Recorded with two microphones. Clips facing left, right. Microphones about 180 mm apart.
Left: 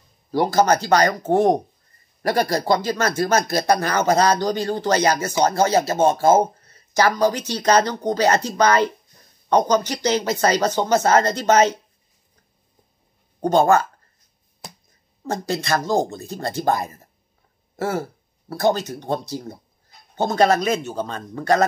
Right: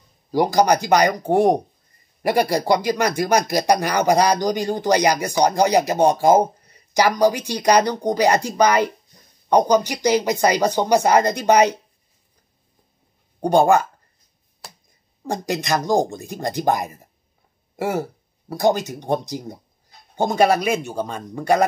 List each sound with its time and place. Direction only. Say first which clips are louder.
0.3 s speech: right 1 dB; 15° right (ahead or behind)
13.4 s speech: right 1 dB; 15° right (ahead or behind)
15.2 s speech: even; 15° right (ahead or behind)